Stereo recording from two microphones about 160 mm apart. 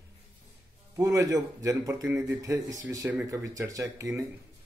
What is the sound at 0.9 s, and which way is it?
A man's voice, 20° right (ahead or behind).